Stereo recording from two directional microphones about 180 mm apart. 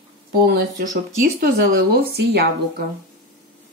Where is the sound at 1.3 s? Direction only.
60° right (ahead or behind).